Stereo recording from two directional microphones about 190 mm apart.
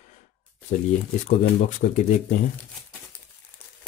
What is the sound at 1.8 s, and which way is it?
Speech, 40° left (ahead or behind).